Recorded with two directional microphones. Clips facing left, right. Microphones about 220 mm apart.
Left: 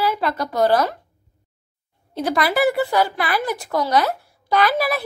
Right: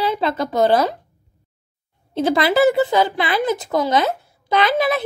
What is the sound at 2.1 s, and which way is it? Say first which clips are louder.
A woman's voice: right 4 dB; 25° right (ahead or behind).